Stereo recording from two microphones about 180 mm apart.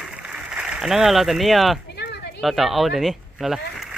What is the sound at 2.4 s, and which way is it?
Speech, centre (ahead or behind).